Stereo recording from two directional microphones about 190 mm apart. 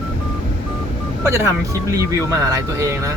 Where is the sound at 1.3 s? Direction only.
15° right (ahead or behind).